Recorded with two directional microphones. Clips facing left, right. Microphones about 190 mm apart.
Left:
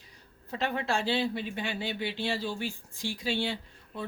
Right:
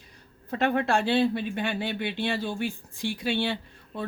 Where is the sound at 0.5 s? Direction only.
55° right (ahead or behind).